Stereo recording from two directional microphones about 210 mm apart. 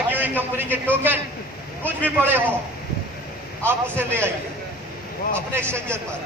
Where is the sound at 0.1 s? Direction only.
10° right (ahead or behind).